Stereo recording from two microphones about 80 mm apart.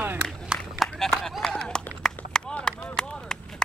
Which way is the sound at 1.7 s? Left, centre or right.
Centre.